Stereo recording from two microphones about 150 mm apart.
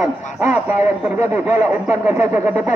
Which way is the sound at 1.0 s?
10° right (ahead or behind).